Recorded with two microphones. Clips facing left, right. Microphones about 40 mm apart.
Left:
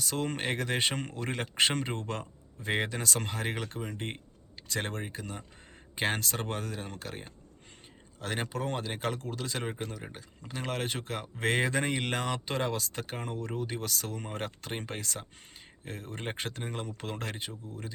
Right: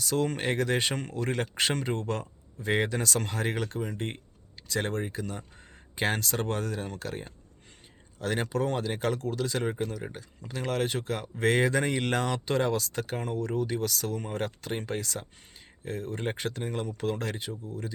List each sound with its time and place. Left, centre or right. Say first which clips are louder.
0.0 s speech: right 4 dB; left